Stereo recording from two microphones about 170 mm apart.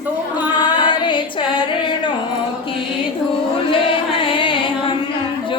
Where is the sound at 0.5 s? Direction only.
30° left (ahead or behind).